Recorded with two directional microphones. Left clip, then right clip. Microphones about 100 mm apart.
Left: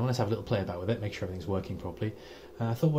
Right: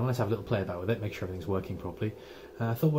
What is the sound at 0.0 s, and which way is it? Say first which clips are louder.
Speech: even; 30° left (ahead or behind).